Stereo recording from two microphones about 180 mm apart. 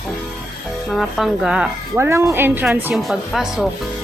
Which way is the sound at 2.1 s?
15° right (ahead or behind).